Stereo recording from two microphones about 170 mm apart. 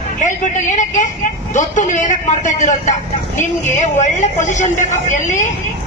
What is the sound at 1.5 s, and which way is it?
A man's voice, 50° left (ahead or behind).